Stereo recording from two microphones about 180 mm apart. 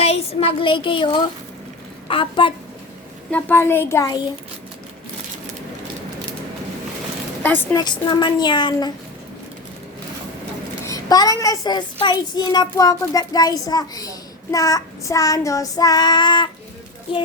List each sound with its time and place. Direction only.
0.0 s a woman's voice: 35° left (ahead or behind)
3.3 s a child's voice: 10° left (ahead or behind)
7.4 s a child's voice: 10° left (ahead or behind)
7.8 s a woman's voice: 25° left (ahead or behind)
10.8 s a woman's voice: 20° left (ahead or behind)